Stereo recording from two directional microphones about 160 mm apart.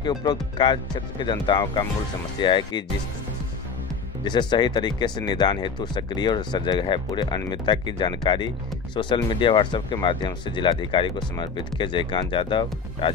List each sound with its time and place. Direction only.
0.0 s speech: 25° left (ahead or behind)
4.2 s speech: 25° left (ahead or behind)